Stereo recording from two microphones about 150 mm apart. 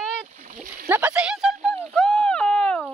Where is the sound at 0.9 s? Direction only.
10° right (ahead or behind).